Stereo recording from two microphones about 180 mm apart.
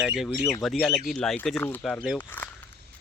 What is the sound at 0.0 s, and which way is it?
Speech, centre (ahead or behind).